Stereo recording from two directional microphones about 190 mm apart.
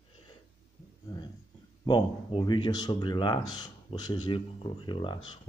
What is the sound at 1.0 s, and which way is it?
Speech, 20° left (ahead or behind).